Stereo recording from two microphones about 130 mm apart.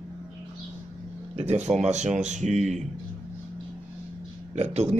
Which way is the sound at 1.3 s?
55° right (ahead or behind).